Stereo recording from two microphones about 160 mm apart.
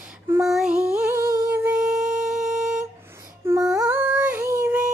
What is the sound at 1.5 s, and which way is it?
Music, 10° right (ahead or behind).